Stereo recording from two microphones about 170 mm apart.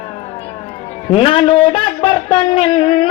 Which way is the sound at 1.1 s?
30° left (ahead or behind).